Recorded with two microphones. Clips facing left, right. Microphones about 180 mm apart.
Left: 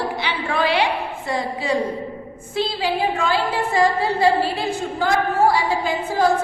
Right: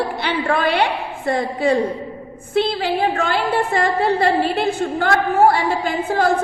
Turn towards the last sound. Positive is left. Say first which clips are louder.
# right 2 dB
turn(degrees=-60)  # may be behind; listen again after turning